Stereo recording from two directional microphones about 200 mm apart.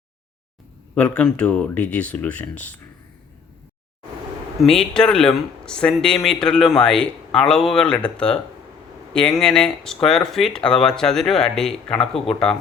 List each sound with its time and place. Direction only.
0.9 s speech: 5° left (ahead or behind)
4.6 s speech: 5° left (ahead or behind)